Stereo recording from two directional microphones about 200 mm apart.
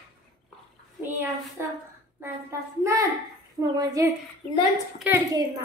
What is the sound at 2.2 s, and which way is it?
A child's voice, 15° right (ahead or behind).